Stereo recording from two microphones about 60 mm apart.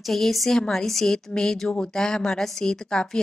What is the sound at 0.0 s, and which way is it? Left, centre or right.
A woman's voice, centre.